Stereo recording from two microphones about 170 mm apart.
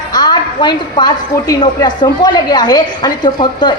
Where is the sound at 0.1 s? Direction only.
25° left (ahead or behind).